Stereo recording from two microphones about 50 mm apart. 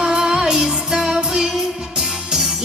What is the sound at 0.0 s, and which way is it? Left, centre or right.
Music, centre.